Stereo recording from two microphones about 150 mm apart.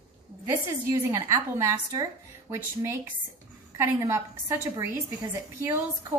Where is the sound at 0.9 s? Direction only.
20° right (ahead or behind).